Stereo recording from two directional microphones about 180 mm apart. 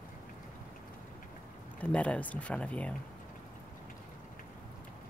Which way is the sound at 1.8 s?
5° left (ahead or behind).